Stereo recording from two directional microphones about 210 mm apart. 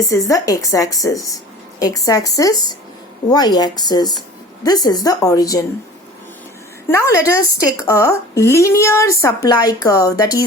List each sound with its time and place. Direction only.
0.0 s a woman's voice: 15° left (ahead or behind)
6.8 s a woman's voice: 15° left (ahead or behind)